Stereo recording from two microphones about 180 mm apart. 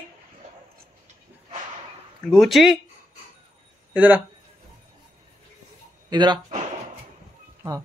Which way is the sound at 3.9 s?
10° right (ahead or behind).